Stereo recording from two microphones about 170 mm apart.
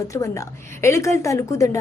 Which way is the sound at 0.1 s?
20° left (ahead or behind).